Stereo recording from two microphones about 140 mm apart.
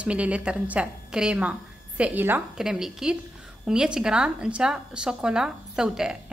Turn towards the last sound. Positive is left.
turn(degrees=-5)  # may be behind; listen again after turning